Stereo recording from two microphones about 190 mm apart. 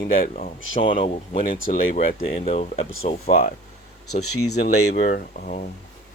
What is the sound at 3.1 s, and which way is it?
Speech, 45° left (ahead or behind).